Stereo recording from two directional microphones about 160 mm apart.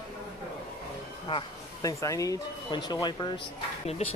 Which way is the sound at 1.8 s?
20° left (ahead or behind).